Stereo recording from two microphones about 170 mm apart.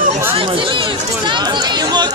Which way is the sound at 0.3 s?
30° right (ahead or behind).